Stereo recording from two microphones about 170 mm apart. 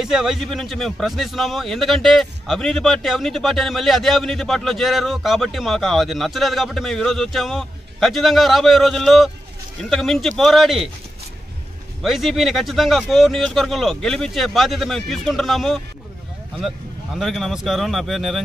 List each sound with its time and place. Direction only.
0.0 s a man's voice: centre (ahead or behind)
12.0 s a man's voice: centre (ahead or behind)